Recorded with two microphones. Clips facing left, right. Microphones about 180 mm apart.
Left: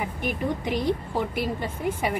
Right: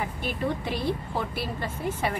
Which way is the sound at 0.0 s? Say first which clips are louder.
Left 1 dB; 15° left (ahead or behind).